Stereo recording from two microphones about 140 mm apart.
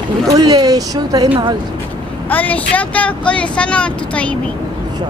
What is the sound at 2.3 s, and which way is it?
Speech, 10° left (ahead or behind).